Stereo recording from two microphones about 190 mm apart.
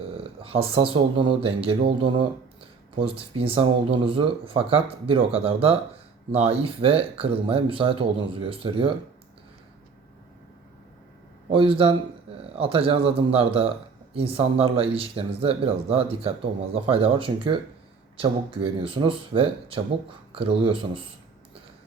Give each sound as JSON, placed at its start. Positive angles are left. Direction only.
{"t": 0.1, "sound": "speech", "side_deg": -30}
{"t": 11.4, "sound": "speech", "side_deg": -30}